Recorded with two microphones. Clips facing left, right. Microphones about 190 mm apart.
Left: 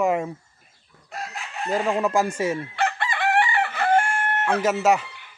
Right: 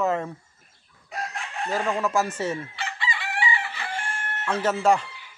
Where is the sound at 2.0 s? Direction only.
15° left (ahead or behind).